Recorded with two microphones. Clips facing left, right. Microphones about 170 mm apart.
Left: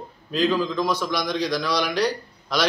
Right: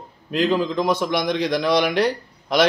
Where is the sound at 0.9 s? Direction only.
55° right (ahead or behind).